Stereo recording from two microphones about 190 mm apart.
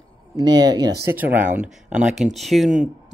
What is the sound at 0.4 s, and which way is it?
Speech, 20° right (ahead or behind).